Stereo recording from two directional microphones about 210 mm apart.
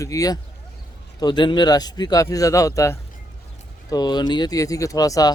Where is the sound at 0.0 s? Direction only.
15° left (ahead or behind).